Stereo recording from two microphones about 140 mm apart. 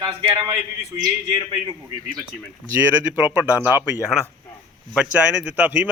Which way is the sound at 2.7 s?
15° right (ahead or behind).